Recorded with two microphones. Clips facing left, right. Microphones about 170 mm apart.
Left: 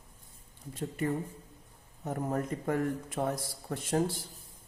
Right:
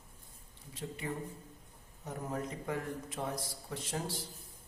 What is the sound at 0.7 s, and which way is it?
A man's voice, 50° left (ahead or behind).